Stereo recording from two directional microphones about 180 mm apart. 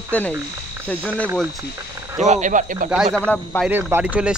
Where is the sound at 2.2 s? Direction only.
40° right (ahead or behind).